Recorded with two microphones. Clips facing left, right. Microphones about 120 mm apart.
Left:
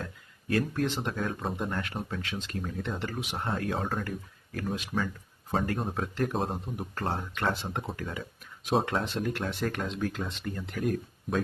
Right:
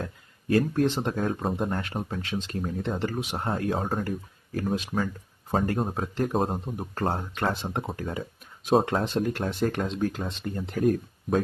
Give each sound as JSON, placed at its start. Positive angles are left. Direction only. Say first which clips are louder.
{"t": 0.5, "sound": "speech", "louder": "right 5 dB", "side_deg": -35}
{"t": 5.9, "sound": "speech", "louder": "right 3 dB", "side_deg": -25}